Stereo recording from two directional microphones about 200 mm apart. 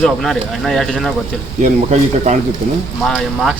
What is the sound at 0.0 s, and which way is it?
A man's voice, centre (ahead or behind).